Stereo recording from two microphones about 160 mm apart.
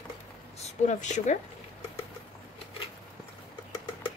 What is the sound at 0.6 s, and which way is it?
Speech, 50° left (ahead or behind).